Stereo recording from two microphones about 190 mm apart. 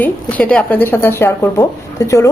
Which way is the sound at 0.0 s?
10° left (ahead or behind).